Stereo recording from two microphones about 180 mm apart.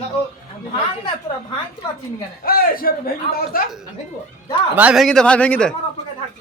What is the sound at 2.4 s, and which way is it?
A man's voice, 55° left (ahead or behind).